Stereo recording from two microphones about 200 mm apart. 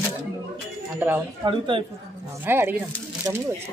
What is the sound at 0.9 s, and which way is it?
Speech, 10° right (ahead or behind).